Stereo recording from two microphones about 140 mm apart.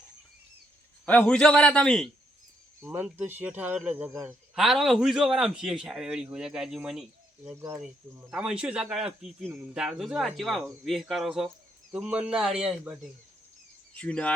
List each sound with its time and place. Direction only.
1.2 s a man's voice: 5° left (ahead or behind)
2.9 s a man's voice: 15° right (ahead or behind)
7.5 s speech: 20° right (ahead or behind)
8.3 s a man's voice: 5° right (ahead or behind)
14.0 s speech: 5° left (ahead or behind)